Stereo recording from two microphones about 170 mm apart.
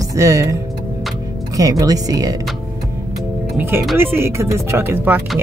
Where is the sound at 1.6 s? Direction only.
20° right (ahead or behind).